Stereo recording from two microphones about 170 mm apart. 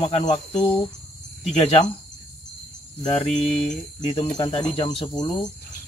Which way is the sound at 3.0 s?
35° left (ahead or behind).